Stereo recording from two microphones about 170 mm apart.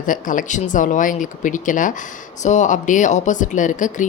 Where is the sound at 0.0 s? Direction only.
50° left (ahead or behind).